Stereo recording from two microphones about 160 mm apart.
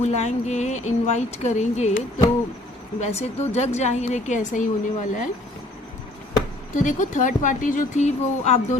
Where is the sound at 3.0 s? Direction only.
45° left (ahead or behind).